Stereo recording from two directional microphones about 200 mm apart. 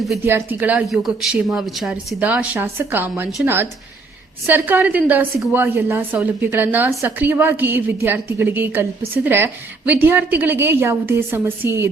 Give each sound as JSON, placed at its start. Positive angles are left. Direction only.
{"t": 0.3, "sound": "a woman's voice", "side_deg": -10}